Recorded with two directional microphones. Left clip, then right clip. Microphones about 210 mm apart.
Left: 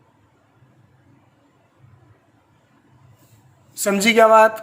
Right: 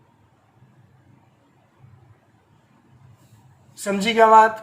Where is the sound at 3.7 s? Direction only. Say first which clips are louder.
Left 5 dB; 60° left (ahead or behind).